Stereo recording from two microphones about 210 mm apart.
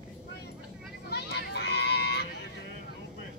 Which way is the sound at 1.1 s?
50° left (ahead or behind).